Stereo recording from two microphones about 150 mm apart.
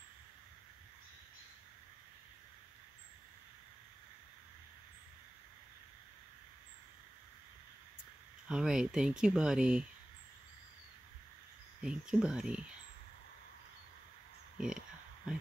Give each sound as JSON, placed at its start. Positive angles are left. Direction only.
{"t": 8.5, "sound": "speech", "side_deg": -5}
{"t": 11.8, "sound": "speech", "side_deg": -5}
{"t": 15.3, "sound": "speech", "side_deg": -5}